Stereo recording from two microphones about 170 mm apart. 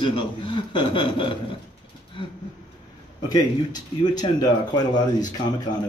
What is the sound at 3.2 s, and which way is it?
A man's voice, 25° left (ahead or behind).